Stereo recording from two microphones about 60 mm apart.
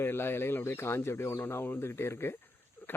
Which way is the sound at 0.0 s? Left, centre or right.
Left.